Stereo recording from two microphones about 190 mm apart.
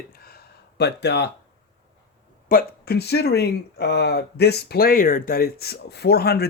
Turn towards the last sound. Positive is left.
turn(degrees=60)  # may be behind; listen again after turning